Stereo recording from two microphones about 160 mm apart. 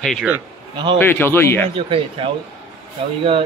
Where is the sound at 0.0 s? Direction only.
Centre (ahead or behind).